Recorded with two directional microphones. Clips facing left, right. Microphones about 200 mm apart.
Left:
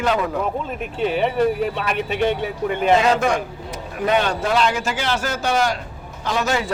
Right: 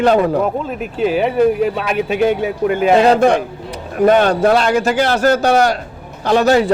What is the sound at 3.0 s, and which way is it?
Speech, 35° right (ahead or behind).